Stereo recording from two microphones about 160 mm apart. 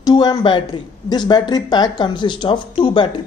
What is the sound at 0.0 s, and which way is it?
A woman's voice, 25° left (ahead or behind).